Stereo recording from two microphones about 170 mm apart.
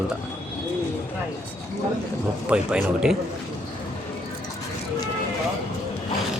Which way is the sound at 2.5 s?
5° right (ahead or behind).